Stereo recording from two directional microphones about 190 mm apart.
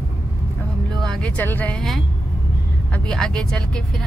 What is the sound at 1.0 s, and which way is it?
Speech, 5° left (ahead or behind).